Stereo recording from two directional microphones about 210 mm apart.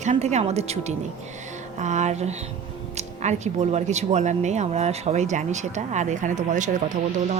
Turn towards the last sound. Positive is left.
turn(degrees=-35)  # may be behind; listen again after turning